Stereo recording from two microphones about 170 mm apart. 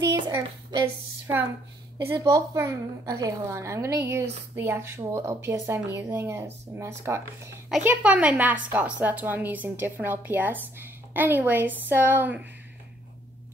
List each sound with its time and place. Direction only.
0.1 s hands: 25° right (ahead or behind)
2.0 s a woman's voice: 20° right (ahead or behind)